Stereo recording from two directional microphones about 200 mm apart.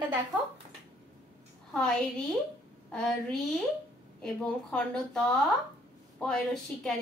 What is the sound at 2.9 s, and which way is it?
Speech, 5° left (ahead or behind).